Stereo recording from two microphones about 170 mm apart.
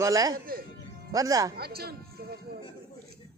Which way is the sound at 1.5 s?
65° right (ahead or behind).